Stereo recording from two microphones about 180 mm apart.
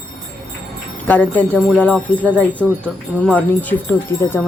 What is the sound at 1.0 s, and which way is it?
Speech, 10° left (ahead or behind).